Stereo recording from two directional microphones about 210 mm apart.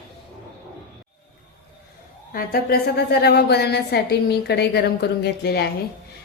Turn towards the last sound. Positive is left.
turn(degrees=50)  # may be behind; listen again after turning